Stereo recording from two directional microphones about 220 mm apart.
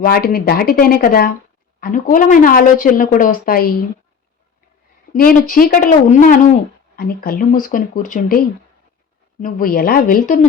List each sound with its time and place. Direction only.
0.0 s a woman's voice: 40° left (ahead or behind)
5.1 s a woman's voice: 40° left (ahead or behind)